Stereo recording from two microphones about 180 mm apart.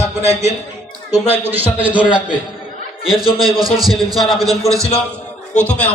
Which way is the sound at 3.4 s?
Centre (ahead or behind).